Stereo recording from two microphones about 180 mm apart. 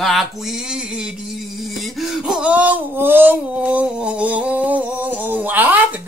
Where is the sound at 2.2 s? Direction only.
5° right (ahead or behind).